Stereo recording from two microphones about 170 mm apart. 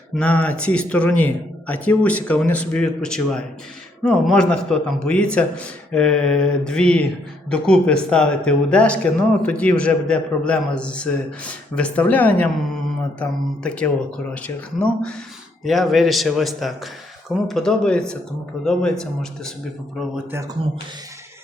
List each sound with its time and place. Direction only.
0.2 s a man's voice: 5° left (ahead or behind)
20.6 s speech: 35° right (ahead or behind)